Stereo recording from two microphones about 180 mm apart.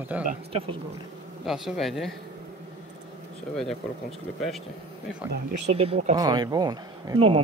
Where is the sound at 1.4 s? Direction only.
Centre (ahead or behind).